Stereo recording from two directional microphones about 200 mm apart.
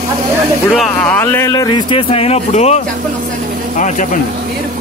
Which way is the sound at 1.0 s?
10° left (ahead or behind).